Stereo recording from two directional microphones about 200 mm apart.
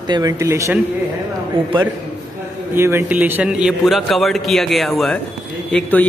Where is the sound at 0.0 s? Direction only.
20° right (ahead or behind).